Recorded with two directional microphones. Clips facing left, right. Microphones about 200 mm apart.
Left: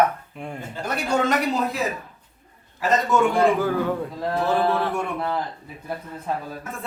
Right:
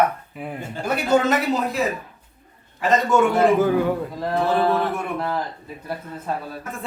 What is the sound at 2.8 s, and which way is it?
Speech, centre (ahead or behind).